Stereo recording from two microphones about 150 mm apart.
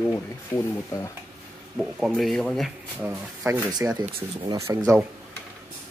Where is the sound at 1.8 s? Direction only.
Centre (ahead or behind).